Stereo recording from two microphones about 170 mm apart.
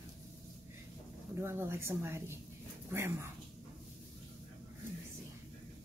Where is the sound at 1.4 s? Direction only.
15° right (ahead or behind).